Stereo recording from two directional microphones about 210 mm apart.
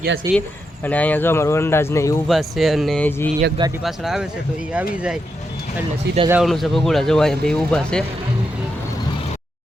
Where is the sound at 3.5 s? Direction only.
20° right (ahead or behind).